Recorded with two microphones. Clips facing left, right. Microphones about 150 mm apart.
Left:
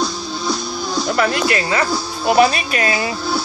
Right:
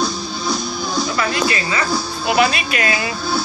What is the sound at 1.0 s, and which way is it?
Speech, 60° left (ahead or behind).